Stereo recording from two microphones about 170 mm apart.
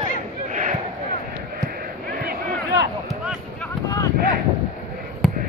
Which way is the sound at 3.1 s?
5° right (ahead or behind).